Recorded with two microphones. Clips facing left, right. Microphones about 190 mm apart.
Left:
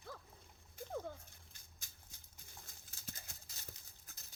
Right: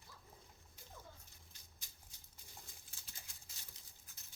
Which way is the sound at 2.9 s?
45° left (ahead or behind).